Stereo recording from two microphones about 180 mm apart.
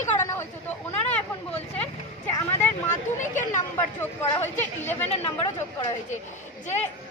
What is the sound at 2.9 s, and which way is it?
Speech, 45° left (ahead or behind).